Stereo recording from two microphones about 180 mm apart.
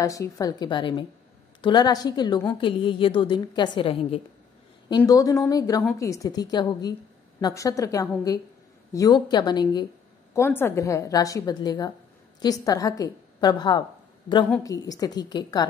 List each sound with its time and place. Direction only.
0.0 s a woman's voice: 20° left (ahead or behind)
10.3 s a woman's voice: 15° left (ahead or behind)